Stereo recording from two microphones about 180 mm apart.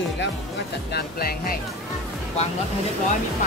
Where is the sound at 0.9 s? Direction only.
55° left (ahead or behind).